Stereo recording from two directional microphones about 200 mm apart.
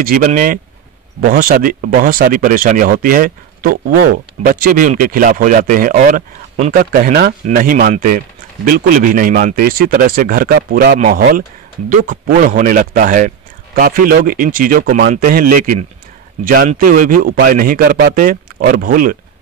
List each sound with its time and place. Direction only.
0.0 s speech: 45° right (ahead or behind)